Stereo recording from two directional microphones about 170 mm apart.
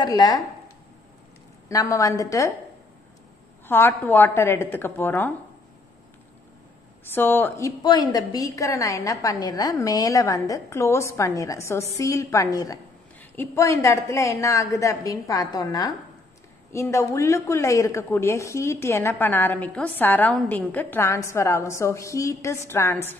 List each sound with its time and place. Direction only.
0.0 s a woman's voice: 25° left (ahead or behind)
1.7 s a woman's voice: 20° left (ahead or behind)
3.6 s a woman's voice: 10° left (ahead or behind)
7.1 s a woman's voice: 10° left (ahead or behind)